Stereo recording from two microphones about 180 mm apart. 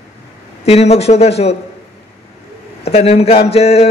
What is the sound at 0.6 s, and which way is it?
Speech, 35° left (ahead or behind).